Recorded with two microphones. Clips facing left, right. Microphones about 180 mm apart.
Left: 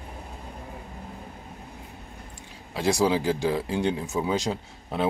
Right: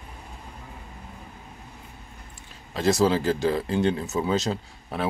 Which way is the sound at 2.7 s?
15° left (ahead or behind).